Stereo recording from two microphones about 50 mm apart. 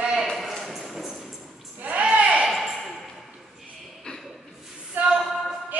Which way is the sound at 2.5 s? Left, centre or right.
Centre.